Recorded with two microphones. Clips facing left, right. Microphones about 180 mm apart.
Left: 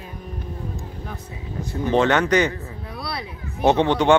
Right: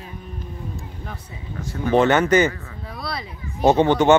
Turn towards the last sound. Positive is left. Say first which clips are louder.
# right 2 dB
turn(degrees=-5)  # may be behind; listen again after turning